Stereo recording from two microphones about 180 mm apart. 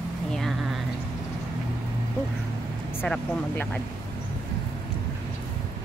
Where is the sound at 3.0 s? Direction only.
10° left (ahead or behind).